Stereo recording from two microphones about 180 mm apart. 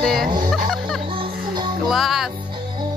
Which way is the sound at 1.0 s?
30° right (ahead or behind).